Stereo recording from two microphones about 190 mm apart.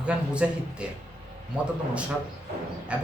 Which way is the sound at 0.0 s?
5° right (ahead or behind).